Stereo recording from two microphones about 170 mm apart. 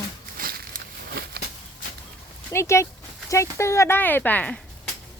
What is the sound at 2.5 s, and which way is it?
Speech, 15° left (ahead or behind).